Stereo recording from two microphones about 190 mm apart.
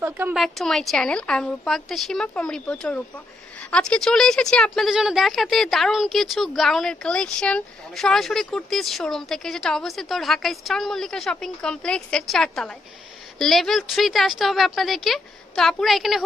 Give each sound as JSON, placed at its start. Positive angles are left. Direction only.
{"t": 0.0, "sound": "speech", "side_deg": -10}
{"t": 0.4, "sound": "speech", "side_deg": 0}